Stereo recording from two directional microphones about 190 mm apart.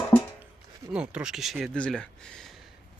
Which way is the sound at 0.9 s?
5° right (ahead or behind).